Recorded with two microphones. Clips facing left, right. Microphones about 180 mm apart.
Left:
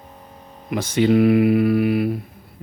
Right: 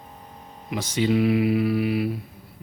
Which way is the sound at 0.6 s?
55° left (ahead or behind).